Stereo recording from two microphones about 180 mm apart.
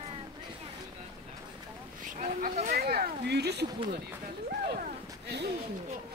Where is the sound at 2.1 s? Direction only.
45° right (ahead or behind); by 3.6 s 65° right (ahead or behind).